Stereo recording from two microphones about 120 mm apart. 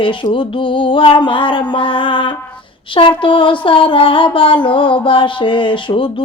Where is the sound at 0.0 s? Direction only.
45° left (ahead or behind).